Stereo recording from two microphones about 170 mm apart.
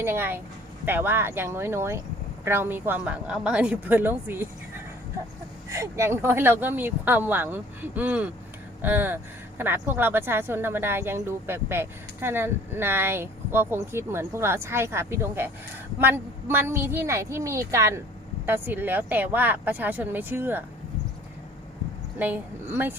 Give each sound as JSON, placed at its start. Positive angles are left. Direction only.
{"t": 0.0, "sound": "a woman's voice", "side_deg": -15}
{"t": 5.6, "sound": "a woman's voice", "side_deg": -20}
{"t": 22.2, "sound": "a woman's voice", "side_deg": -10}